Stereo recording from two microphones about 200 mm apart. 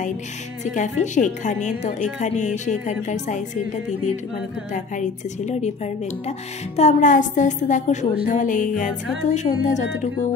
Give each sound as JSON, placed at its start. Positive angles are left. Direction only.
{"t": 0.7, "sound": "speech", "side_deg": 35}
{"t": 6.8, "sound": "speech", "side_deg": 35}